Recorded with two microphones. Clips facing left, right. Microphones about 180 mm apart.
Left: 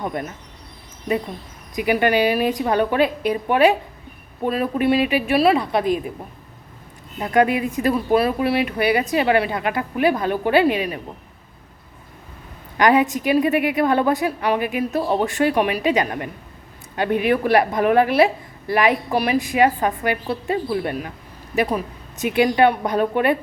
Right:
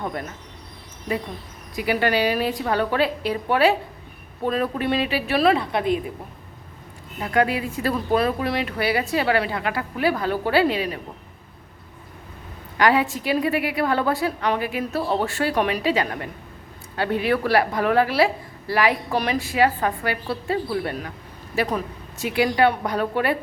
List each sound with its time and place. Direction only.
0.0 s speech: 20° left (ahead or behind)
1.7 s a woman's voice: 20° left (ahead or behind)
5.7 s speech: 25° right (ahead or behind)
7.2 s speech: 20° left (ahead or behind)
12.7 s a woman's voice: 20° left (ahead or behind)